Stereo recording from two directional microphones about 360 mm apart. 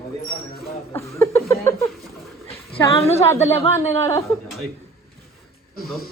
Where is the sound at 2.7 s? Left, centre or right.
Centre.